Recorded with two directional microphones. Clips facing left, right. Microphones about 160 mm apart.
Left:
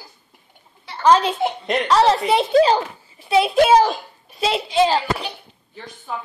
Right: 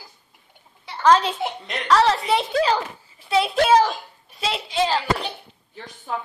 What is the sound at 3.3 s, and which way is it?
A child's voice, 15° left (ahead or behind).